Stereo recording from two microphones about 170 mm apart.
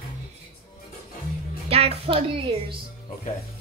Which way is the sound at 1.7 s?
35° right (ahead or behind).